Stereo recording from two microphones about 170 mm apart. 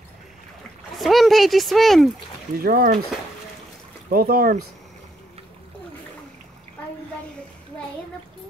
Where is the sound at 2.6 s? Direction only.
60° right (ahead or behind).